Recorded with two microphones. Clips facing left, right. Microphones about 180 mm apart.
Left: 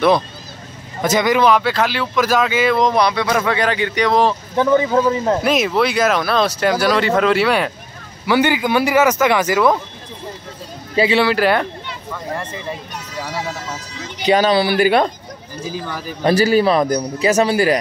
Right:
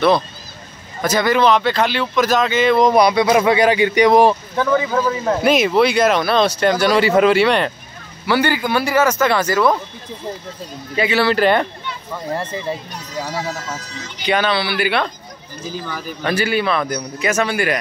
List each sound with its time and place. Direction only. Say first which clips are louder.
1.0 s speech: left 1 dB; 20° left (ahead or behind)
2.8 s speech: right 3 dB; 10° right (ahead or behind)
4.6 s speech: left 3 dB; 25° left (ahead or behind)
5.4 s speech: right 2 dB; centre (ahead or behind)
8.3 s speech: left 2 dB; 15° left (ahead or behind)
11.0 s speech: left 3 dB; 30° left (ahead or behind)
11.2 s speech: right 1 dB; 5° left (ahead or behind)
14.2 s a man's voice: left 4 dB; 40° left (ahead or behind)
16.2 s a man's voice: left 6 dB; 35° left (ahead or behind)